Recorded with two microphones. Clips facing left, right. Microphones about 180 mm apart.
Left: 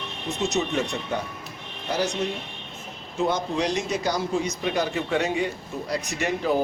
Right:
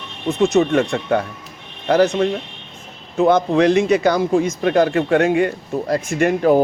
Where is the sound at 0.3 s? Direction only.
55° right (ahead or behind).